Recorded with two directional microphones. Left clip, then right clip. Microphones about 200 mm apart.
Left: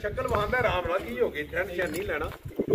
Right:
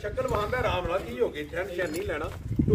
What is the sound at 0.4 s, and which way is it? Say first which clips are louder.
A man's voice: left 2 dB; 45° right (ahead or behind).